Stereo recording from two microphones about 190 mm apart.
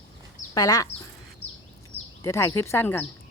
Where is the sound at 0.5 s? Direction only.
20° left (ahead or behind).